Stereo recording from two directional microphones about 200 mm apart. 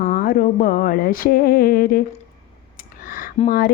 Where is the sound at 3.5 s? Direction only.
50° left (ahead or behind).